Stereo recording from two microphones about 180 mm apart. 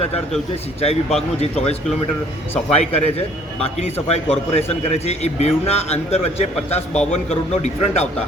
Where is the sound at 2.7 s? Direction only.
35° left (ahead or behind).